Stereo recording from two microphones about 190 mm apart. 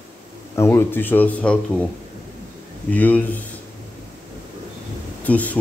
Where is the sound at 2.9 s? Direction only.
10° left (ahead or behind).